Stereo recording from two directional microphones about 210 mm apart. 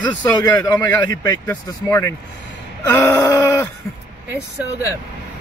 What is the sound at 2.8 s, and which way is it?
Groan, 10° left (ahead or behind).